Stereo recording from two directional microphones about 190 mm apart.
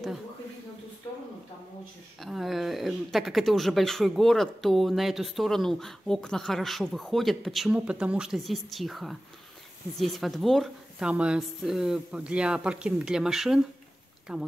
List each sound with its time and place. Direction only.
2.1 s speech: centre (ahead or behind)